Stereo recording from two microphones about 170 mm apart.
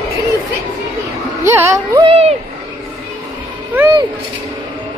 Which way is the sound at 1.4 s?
15° right (ahead or behind).